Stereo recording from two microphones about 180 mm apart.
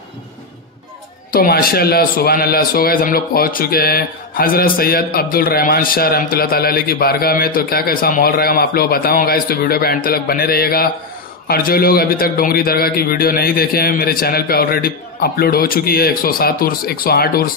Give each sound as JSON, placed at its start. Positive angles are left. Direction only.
{"t": 1.3, "sound": "speech", "side_deg": 55}